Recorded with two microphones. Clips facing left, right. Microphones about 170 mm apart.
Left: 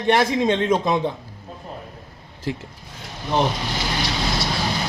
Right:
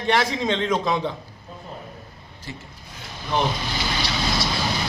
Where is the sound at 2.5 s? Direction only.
90° left.